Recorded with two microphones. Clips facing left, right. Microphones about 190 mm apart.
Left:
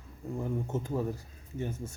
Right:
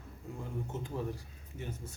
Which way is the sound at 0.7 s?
45° left (ahead or behind).